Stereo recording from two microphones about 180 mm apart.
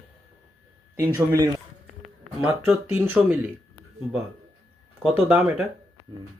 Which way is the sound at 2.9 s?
10° right (ahead or behind).